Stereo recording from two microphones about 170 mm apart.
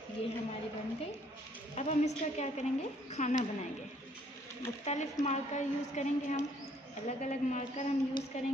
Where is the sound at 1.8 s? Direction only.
40° left (ahead or behind).